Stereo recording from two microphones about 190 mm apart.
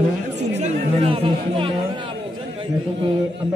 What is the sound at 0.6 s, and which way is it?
Chatter, 30° right (ahead or behind).